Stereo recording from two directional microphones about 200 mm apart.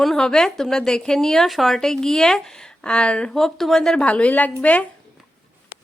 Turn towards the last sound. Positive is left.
turn(degrees=5)  # may be behind; listen again after turning